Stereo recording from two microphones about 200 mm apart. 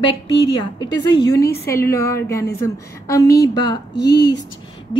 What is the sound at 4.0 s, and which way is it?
Speech, 55° left (ahead or behind).